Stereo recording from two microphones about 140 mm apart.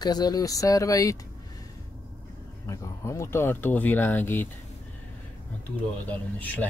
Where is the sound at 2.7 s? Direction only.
20° left (ahead or behind).